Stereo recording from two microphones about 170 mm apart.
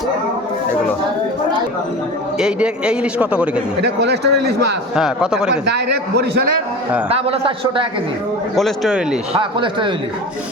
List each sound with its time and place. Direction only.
2.4 s a man's voice: 5° right (ahead or behind)
3.8 s a man's voice: 75° right (ahead or behind)
4.9 s speech: 5° right (ahead or behind)
5.6 s a man's voice: 75° right (ahead or behind)
7.1 s a man's voice: 35° right (ahead or behind)
8.5 s speech: centre (ahead or behind)
9.3 s speech: 30° right (ahead or behind)